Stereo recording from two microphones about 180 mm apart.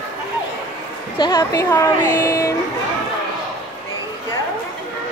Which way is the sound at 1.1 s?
25° left (ahead or behind).